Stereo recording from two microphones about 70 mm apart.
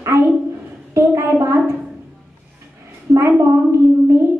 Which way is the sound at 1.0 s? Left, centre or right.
Right.